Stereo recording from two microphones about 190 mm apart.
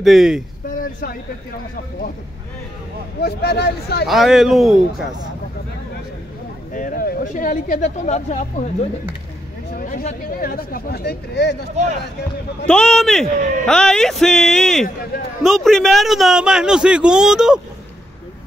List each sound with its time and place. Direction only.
0.0 s a man's voice: centre (ahead or behind)
0.7 s a sound: 45° left (ahead or behind)
3.2 s speech: 55° left (ahead or behind)
4.1 s a man's voice: centre (ahead or behind)
6.7 s speech: 45° left (ahead or behind)
9.8 s speech: 50° left (ahead or behind)
12.6 s a man's voice: 5° left (ahead or behind)